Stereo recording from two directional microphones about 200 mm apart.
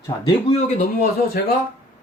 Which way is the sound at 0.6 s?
35° left (ahead or behind).